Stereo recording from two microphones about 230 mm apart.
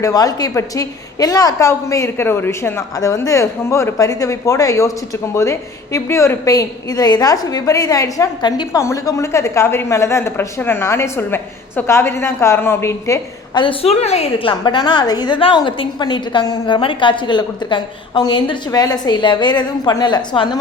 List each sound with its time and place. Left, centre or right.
0.0 s a woman's voice: centre